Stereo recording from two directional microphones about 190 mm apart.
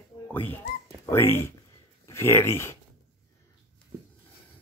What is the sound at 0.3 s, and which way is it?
Speech, 10° left (ahead or behind).